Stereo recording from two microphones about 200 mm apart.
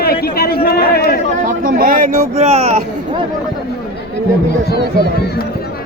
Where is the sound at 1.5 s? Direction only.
45° right (ahead or behind).